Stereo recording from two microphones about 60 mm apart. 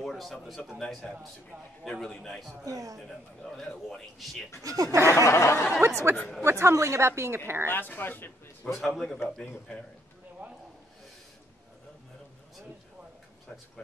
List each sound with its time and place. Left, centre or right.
0.0 s a man's voice: centre
2.6 s a man's voice: right
3.4 s speech: centre
4.6 s speech: right
5.1 s snicker: left
5.8 s a woman's voice: right
7.6 s speech: left
8.7 s speech: centre